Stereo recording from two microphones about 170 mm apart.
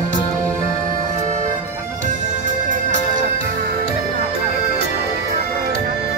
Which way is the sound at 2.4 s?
45° right (ahead or behind).